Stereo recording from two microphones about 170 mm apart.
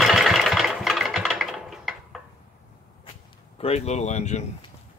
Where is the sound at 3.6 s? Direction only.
40° left (ahead or behind).